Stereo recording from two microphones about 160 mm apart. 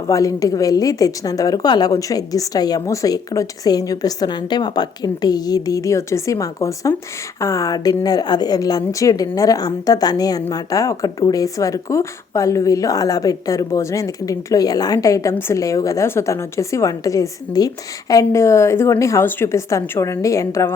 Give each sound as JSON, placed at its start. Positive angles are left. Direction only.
{"t": 0.1, "sound": "speech", "side_deg": 20}